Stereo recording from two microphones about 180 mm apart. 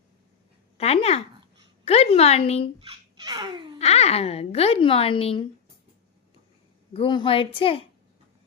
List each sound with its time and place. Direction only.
0.8 s a woman's voice: 35° left (ahead or behind)
3.2 s babbling: 20° right (ahead or behind)
3.8 s a woman's voice: 35° left (ahead or behind)
6.9 s a woman's voice: 30° left (ahead or behind)